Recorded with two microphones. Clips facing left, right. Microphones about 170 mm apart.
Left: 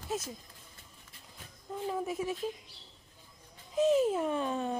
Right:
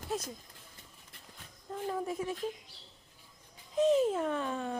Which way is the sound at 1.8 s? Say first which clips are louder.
Left 1 dB; 10° left (ahead or behind).